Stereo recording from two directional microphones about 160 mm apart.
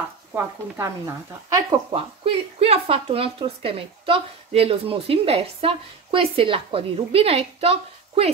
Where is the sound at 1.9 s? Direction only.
35° right (ahead or behind).